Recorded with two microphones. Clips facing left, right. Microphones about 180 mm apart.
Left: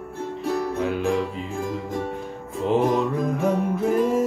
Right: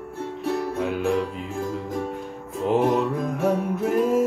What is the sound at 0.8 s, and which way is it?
Music, centre (ahead or behind).